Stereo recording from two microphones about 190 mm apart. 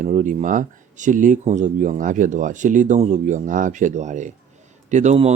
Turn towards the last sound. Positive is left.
turn(degrees=-35)  # may be behind; listen again after turning